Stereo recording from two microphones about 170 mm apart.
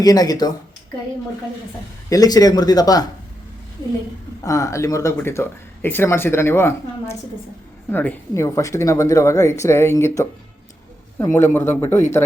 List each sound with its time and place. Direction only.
0.0 s speech: 20° left (ahead or behind)
2.0 s speech: 20° left (ahead or behind)
4.4 s speech: 20° left (ahead or behind)